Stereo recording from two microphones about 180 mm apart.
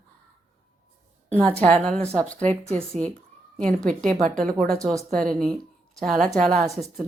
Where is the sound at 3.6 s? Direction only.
5° left (ahead or behind).